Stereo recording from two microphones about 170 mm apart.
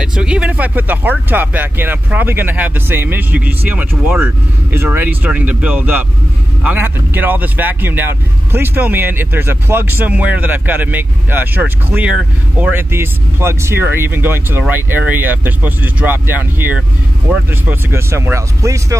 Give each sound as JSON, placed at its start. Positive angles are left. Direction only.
{"t": 0.0, "sound": "speech", "side_deg": -5}